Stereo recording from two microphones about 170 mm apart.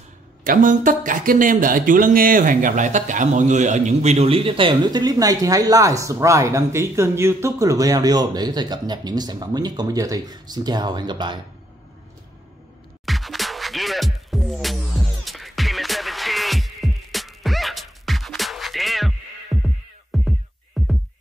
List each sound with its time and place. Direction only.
0.5 s speech: 50° right (ahead or behind); by 11.3 s 25° right (ahead or behind)
13.0 s music: centre (ahead or behind)